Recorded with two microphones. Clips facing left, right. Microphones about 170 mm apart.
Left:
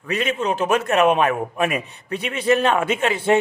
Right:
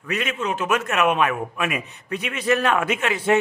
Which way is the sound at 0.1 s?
30° left (ahead or behind).